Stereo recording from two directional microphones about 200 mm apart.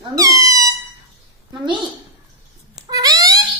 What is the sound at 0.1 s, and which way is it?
Squeak, 15° right (ahead or behind).